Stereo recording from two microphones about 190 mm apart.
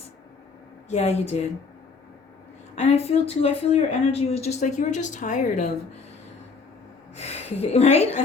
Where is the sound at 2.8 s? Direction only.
35° left (ahead or behind).